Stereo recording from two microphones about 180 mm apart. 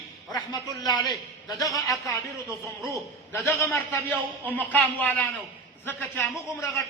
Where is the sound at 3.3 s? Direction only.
10° left (ahead or behind).